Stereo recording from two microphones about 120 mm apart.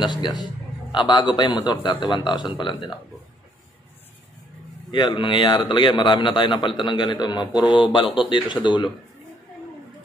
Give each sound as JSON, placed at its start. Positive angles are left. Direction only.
{"t": 0.0, "sound": "a man's voice", "side_deg": 40}
{"t": 4.9, "sound": "a man's voice", "side_deg": 45}